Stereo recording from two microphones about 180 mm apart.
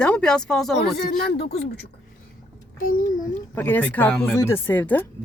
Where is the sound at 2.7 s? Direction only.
50° left (ahead or behind).